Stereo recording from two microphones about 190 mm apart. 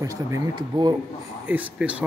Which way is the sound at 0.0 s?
15° right (ahead or behind).